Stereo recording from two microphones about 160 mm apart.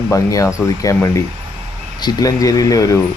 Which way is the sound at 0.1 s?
20° left (ahead or behind).